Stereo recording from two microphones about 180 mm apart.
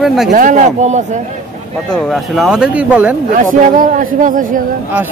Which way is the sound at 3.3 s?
50° right (ahead or behind).